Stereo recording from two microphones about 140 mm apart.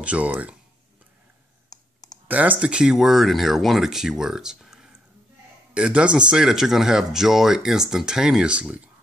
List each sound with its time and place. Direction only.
0.0 s speech: 10° right (ahead or behind)
1.7 s clicking: 30° left (ahead or behind)
2.2 s speech: 10° right (ahead or behind)